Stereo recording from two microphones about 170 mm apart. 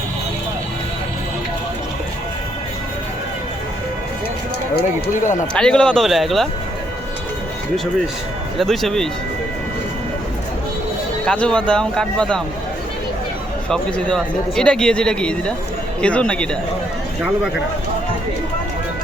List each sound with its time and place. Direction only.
5.2 s speech: 45° left (ahead or behind)
5.5 s a man's voice: 5° left (ahead or behind)
8.5 s a man's voice: centre (ahead or behind)
11.3 s a man's voice: 5° left (ahead or behind)
13.7 s a man's voice: 5° left (ahead or behind)